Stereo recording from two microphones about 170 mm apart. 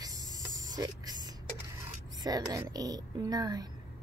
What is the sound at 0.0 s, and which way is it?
Snake, 20° right (ahead or behind).